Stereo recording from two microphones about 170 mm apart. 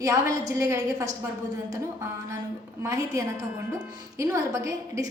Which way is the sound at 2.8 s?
20° right (ahead or behind).